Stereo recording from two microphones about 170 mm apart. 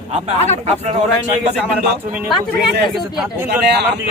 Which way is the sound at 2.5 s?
70° right (ahead or behind).